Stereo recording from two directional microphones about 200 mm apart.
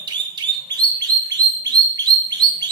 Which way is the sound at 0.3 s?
20° right (ahead or behind).